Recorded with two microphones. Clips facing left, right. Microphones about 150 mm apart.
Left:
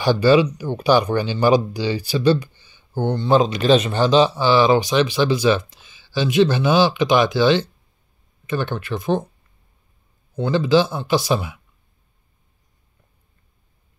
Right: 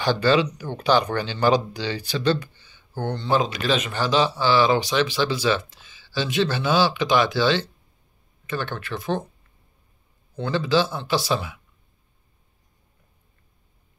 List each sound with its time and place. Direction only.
0.0 s speech: 10° left (ahead or behind)
10.3 s speech: 15° left (ahead or behind)